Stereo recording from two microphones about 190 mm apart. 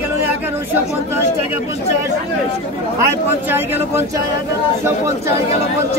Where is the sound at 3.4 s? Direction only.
10° right (ahead or behind).